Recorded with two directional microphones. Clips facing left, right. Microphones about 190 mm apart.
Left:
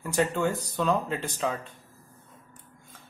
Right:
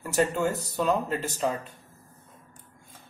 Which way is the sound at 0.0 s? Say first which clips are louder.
Right 1 dB; 5° right (ahead or behind).